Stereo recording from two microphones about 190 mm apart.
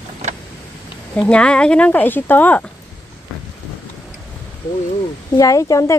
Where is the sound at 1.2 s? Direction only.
5° left (ahead or behind).